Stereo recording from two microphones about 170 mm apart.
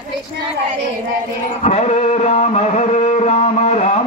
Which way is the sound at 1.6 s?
40° left (ahead or behind).